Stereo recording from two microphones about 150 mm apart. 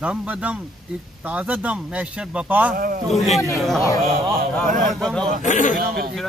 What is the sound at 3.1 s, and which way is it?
Speech, centre (ahead or behind).